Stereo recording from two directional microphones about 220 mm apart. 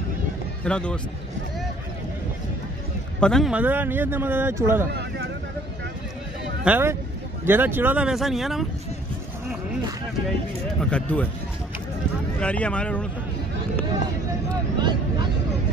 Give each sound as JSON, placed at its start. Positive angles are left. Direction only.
{"t": 0.7, "sound": "speech", "side_deg": 5}
{"t": 3.2, "sound": "speech", "side_deg": 5}
{"t": 6.6, "sound": "speech", "side_deg": -10}
{"t": 10.8, "sound": "speech", "side_deg": 5}
{"t": 12.4, "sound": "speech", "side_deg": 5}
{"t": 14.8, "sound": "vehicle", "side_deg": -20}